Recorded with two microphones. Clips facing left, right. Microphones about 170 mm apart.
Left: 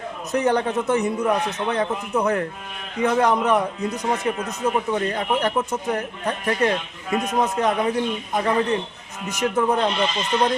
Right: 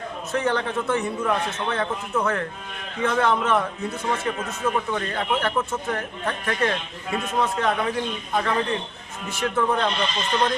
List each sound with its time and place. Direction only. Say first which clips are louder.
0.3 s a man's voice: left 4 dB; 15° left (ahead or behind)